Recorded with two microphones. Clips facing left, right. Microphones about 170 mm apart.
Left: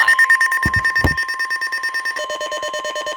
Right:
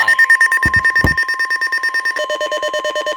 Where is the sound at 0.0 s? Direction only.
30° right (ahead or behind).